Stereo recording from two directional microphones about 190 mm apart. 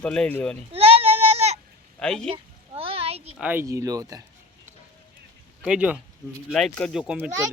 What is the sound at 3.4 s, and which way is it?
Speech, 10° right (ahead or behind).